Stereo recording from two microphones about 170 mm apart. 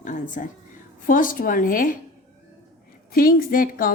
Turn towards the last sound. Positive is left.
turn(degrees=55)  # may be behind; listen again after turning